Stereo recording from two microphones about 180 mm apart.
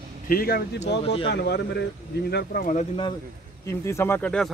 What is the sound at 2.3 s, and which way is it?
Speech, 60° left (ahead or behind).